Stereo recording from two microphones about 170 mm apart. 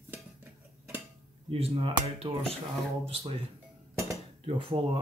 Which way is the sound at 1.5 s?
35° right (ahead or behind).